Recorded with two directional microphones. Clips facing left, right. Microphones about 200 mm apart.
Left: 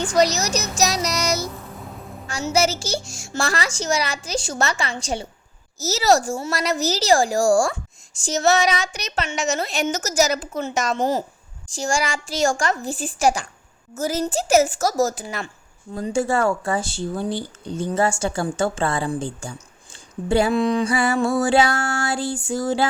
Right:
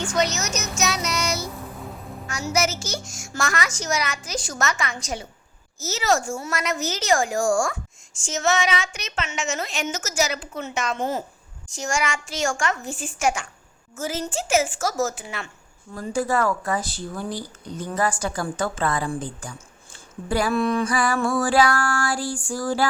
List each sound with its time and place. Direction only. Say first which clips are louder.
0.0 s a woman's voice: left 5 dB; 35° left (ahead or behind)
16.0 s speech: left 2 dB; 25° left (ahead or behind)